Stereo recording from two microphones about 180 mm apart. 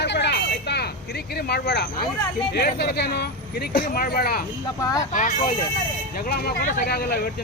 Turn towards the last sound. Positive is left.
turn(degrees=60)  # may be behind; listen again after turning